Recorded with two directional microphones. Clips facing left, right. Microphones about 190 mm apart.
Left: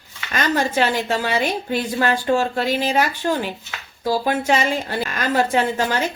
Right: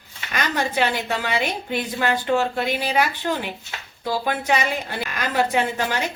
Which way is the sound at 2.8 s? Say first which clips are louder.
Left 2 dB; 45° left (ahead or behind).